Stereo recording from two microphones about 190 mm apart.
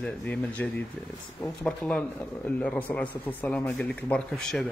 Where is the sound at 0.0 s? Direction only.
5° left (ahead or behind).